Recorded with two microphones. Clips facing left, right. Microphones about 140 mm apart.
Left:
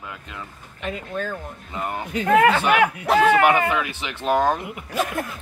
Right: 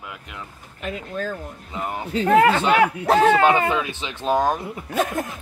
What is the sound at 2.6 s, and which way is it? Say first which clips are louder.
Speech: right 1 dB; 35° right (ahead or behind).